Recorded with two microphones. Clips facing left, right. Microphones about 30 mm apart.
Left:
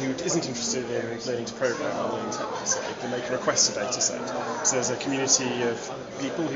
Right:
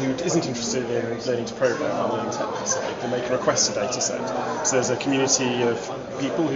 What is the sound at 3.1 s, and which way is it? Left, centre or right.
A man's voice, centre.